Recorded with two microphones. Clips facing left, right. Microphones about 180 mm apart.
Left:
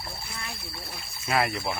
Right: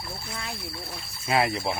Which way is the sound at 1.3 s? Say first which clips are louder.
Right 2 dB; 25° right (ahead or behind).